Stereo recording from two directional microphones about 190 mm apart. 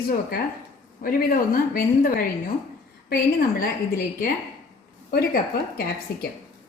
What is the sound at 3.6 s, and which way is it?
Speech, 50° left (ahead or behind).